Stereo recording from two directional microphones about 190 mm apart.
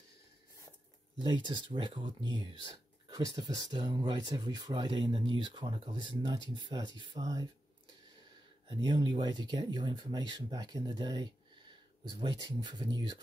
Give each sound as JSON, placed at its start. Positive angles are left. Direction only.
{"t": 1.1, "sound": "speech", "side_deg": -25}
{"t": 8.6, "sound": "speech", "side_deg": -25}